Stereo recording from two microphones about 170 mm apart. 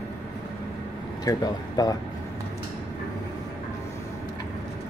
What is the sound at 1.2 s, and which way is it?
Speech, 20° left (ahead or behind).